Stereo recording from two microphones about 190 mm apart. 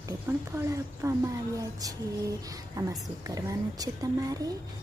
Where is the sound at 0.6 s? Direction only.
15° right (ahead or behind).